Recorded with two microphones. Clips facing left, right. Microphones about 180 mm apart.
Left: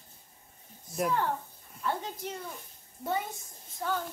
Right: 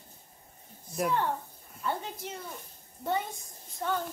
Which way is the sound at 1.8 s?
5° right (ahead or behind).